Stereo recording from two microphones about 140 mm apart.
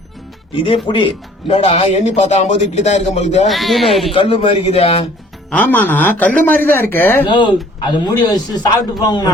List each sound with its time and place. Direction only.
0.5 s a man's voice: 40° left (ahead or behind)
1.5 s a man's voice: 55° left (ahead or behind)
3.4 s speech: centre (ahead or behind)
4.1 s a man's voice: 40° left (ahead or behind)
5.5 s speech: 10° left (ahead or behind)
7.3 s a man's voice: 35° left (ahead or behind)